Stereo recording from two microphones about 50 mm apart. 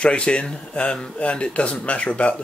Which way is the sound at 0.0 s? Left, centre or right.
Left.